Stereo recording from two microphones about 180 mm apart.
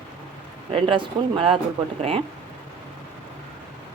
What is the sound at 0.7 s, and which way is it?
A woman's voice, 30° right (ahead or behind).